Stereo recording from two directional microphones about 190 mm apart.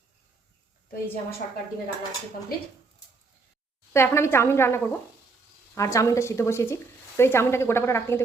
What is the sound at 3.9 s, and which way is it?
A woman's voice, 15° left (ahead or behind).